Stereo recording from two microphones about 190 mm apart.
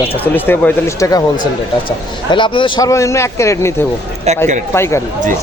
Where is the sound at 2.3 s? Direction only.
25° left (ahead or behind).